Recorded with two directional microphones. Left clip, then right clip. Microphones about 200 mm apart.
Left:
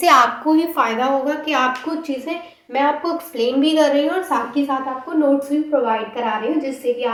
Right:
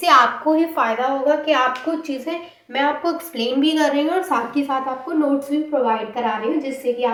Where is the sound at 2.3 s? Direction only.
20° left (ahead or behind).